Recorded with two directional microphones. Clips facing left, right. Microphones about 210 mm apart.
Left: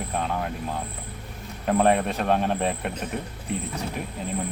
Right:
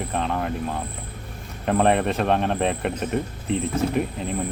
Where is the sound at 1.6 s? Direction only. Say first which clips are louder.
Right 1 dB; 5° left (ahead or behind).